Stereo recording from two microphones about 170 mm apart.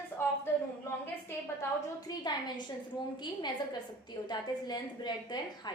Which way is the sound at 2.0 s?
25° left (ahead or behind).